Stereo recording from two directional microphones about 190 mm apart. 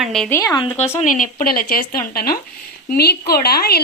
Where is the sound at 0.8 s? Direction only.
40° left (ahead or behind).